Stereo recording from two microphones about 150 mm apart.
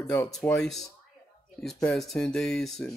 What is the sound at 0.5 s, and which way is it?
Speech, centre (ahead or behind).